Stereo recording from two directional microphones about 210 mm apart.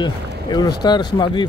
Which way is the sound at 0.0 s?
20° left (ahead or behind).